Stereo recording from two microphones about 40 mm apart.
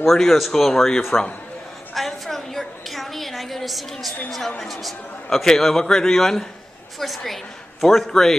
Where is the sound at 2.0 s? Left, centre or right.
Centre.